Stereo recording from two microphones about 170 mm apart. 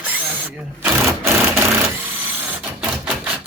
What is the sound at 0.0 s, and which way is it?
Sewing machine, 10° right (ahead or behind).